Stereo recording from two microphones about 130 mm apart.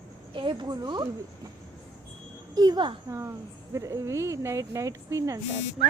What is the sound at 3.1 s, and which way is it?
Speech, 25° right (ahead or behind).